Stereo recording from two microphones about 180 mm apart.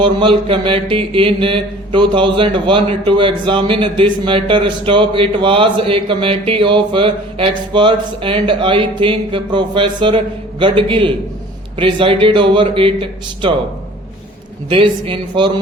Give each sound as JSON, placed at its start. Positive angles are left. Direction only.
{"t": 0.0, "sound": "mantra", "side_deg": -30}
{"t": 14.7, "sound": "mantra", "side_deg": -30}